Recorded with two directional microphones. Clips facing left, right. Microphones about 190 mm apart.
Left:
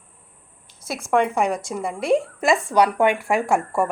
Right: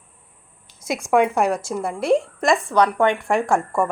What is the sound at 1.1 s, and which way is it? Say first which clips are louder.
A woman's voice: right 2 dB; 5° right (ahead or behind).